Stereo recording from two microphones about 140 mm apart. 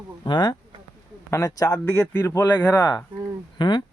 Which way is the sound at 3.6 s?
35° left (ahead or behind).